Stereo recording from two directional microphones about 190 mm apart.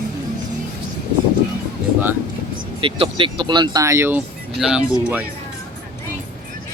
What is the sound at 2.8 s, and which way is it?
Speech, 30° right (ahead or behind).